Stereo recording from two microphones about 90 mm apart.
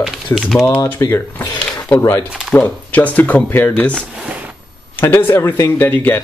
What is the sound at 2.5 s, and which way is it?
Speech, 20° left (ahead or behind).